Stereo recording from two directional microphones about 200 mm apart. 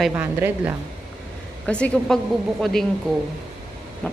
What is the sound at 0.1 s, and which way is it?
Speech, 10° right (ahead or behind).